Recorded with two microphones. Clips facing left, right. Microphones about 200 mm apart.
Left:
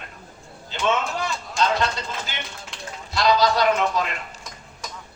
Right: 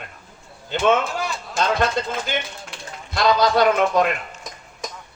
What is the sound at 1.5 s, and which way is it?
A man's voice, 50° right (ahead or behind).